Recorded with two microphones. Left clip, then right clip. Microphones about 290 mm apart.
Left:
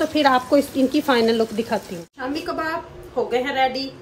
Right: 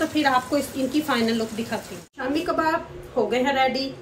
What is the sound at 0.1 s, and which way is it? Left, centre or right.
Speech, left.